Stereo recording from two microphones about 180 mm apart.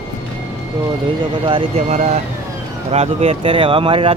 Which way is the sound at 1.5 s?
30° right (ahead or behind).